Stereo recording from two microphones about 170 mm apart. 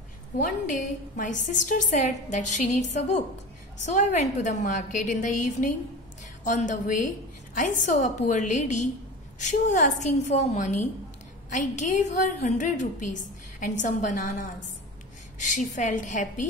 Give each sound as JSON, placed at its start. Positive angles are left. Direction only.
{"t": 0.4, "sound": "a woman's voice", "side_deg": 50}